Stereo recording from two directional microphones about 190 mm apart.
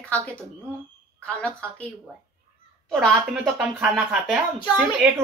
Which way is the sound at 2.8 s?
Centre (ahead or behind).